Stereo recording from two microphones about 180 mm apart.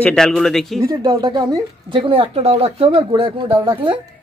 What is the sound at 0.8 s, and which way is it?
Speech, 25° right (ahead or behind).